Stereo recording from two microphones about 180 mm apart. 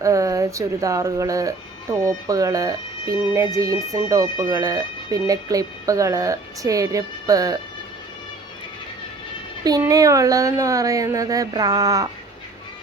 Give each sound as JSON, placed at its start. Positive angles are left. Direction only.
{"t": 0.0, "sound": "speech", "side_deg": -20}
{"t": 9.6, "sound": "speech", "side_deg": -20}